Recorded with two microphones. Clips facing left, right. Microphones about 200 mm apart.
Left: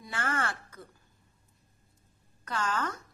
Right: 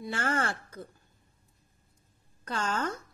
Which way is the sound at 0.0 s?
30° right (ahead or behind).